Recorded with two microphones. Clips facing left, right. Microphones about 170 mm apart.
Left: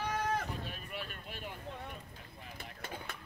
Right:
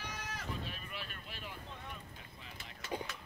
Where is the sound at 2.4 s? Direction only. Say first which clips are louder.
Left 6 dB; 55° left (ahead or behind).